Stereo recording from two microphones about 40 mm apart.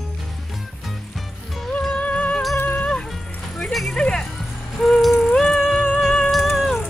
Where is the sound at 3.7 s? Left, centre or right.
Centre.